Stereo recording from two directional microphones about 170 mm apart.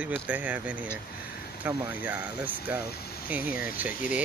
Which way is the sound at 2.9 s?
65° left (ahead or behind).